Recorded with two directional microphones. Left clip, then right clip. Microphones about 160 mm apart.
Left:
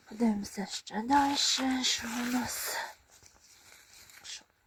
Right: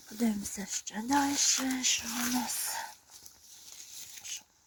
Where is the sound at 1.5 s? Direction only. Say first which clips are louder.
Left 1 dB; 20° left (ahead or behind).